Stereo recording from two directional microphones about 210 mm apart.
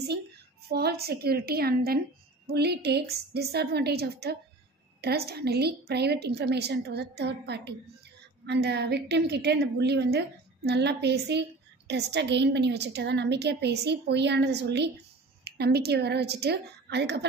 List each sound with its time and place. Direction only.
0.7 s a woman's voice: 50° right (ahead or behind)